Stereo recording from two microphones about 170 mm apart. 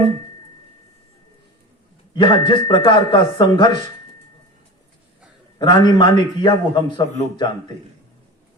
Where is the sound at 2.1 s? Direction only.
25° left (ahead or behind).